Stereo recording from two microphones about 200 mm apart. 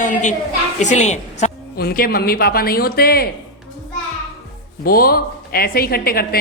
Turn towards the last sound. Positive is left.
turn(degrees=50)  # may be behind; listen again after turning